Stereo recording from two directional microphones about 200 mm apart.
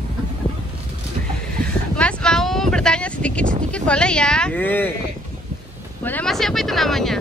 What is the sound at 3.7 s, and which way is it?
Speech, 5° left (ahead or behind).